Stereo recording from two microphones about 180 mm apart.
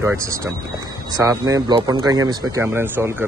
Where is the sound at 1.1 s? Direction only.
20° right (ahead or behind).